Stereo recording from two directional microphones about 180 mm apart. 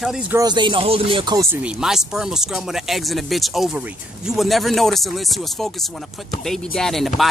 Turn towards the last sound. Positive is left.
turn(degrees=0)  # may be behind; listen again after turning